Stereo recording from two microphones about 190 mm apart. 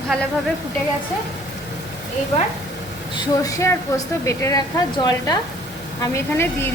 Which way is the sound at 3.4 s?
15° left (ahead or behind).